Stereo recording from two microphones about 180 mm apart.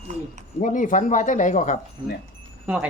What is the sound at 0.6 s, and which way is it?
Speech, 45° left (ahead or behind).